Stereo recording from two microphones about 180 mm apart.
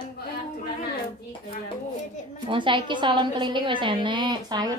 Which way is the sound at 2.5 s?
25° right (ahead or behind).